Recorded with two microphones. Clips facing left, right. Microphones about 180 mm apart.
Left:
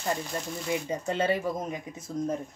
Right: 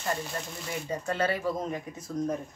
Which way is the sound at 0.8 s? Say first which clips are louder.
Right 1 dB; 20° left (ahead or behind).